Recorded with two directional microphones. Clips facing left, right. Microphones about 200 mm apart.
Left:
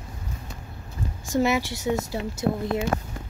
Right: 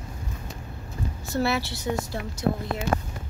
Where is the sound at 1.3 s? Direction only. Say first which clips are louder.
Left 3 dB; 15° left (ahead or behind).